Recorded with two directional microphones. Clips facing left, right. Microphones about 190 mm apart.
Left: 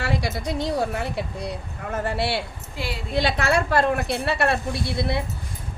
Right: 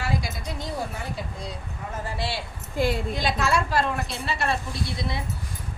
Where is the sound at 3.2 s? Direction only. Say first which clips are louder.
Left 8 dB; 70° left (ahead or behind).